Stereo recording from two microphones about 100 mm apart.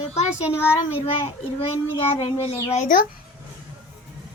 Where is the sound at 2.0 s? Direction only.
90° left.